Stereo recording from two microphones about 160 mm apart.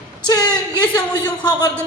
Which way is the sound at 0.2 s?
25° left (ahead or behind).